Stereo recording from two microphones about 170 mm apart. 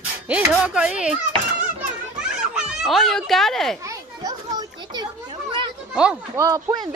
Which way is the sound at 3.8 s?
20° right (ahead or behind).